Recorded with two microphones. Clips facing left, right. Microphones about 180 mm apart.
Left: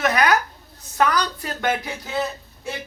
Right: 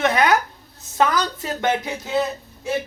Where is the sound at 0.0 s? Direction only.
25° right (ahead or behind).